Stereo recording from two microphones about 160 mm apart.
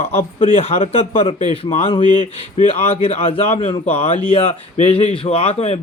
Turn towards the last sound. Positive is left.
turn(degrees=40)  # may be behind; listen again after turning